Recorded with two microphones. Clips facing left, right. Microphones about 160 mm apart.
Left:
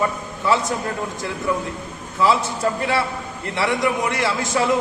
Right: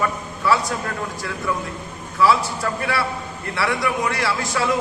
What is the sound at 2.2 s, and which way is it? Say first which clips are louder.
A man's voice: even; 20° left (ahead or behind).